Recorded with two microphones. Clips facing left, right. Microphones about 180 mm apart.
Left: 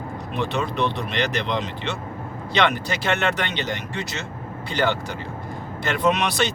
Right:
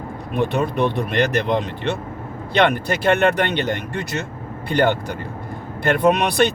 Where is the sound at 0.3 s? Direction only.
55° right (ahead or behind).